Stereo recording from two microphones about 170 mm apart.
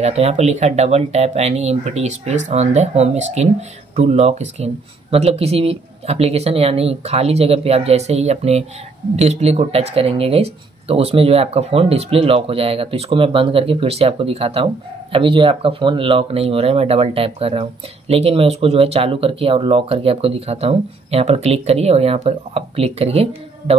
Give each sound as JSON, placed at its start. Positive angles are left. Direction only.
{"t": 0.0, "sound": "speech", "side_deg": -40}